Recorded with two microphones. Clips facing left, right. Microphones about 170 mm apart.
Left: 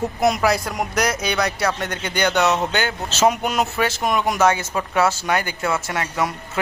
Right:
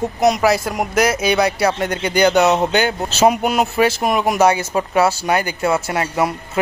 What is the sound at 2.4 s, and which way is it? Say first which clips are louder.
Speech: right 4 dB; 30° right (ahead or behind).